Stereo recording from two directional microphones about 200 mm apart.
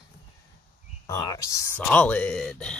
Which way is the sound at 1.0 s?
15° left (ahead or behind).